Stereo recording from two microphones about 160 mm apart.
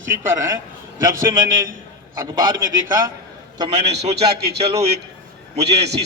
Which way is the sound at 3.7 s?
45° right (ahead or behind).